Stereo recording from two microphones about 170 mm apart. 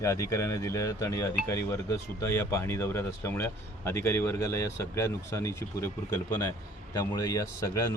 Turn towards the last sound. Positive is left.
turn(degrees=20)  # may be behind; listen again after turning